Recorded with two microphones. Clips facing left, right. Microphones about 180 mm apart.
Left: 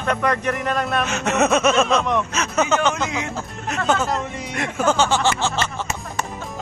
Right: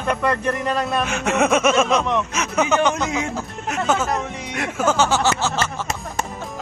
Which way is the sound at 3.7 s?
5° right (ahead or behind).